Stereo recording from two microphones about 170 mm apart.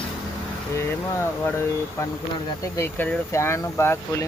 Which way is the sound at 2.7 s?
10° left (ahead or behind).